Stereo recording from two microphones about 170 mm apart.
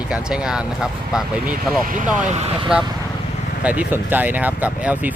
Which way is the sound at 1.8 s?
50° right (ahead or behind).